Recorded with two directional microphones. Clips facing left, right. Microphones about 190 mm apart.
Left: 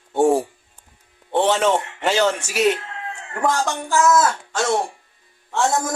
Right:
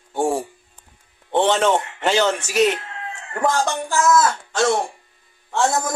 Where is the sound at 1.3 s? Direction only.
5° left (ahead or behind).